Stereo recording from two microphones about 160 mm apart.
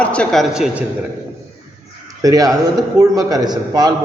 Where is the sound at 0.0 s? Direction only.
5° left (ahead or behind).